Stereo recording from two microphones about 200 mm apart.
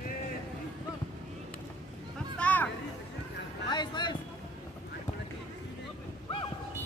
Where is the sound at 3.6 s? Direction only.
20° left (ahead or behind).